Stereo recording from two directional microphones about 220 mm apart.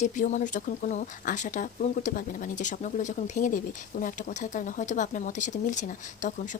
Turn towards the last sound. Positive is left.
turn(degrees=35)  # may be behind; listen again after turning